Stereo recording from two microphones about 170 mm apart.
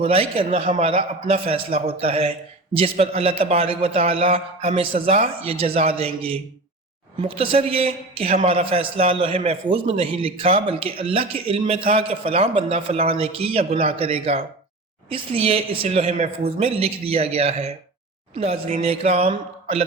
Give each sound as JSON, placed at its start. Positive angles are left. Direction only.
{"t": 0.0, "sound": "a man's voice", "side_deg": -35}